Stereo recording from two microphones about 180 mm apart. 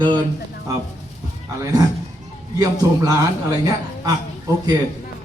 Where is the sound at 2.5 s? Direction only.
20° right (ahead or behind).